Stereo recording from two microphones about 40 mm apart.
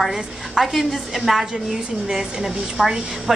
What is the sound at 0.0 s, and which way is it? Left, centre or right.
A woman's voice, centre.